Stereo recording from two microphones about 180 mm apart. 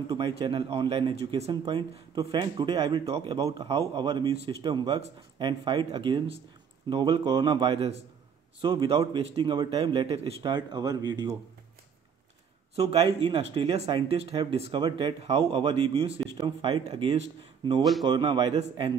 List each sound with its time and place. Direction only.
0.1 s speech: 30° right (ahead or behind)
2.8 s speech: 35° right (ahead or behind)
12.7 s speech: 35° right (ahead or behind)